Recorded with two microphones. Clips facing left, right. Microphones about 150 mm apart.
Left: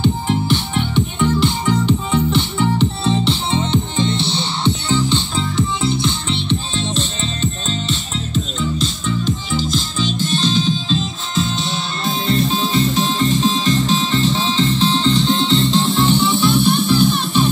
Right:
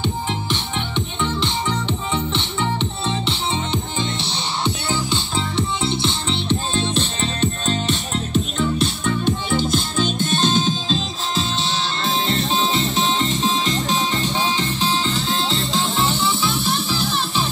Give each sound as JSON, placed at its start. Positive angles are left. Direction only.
{"t": 0.0, "sound": "music", "side_deg": 5}
{"t": 5.6, "sound": "music", "side_deg": -30}
{"t": 6.7, "sound": "music", "side_deg": -55}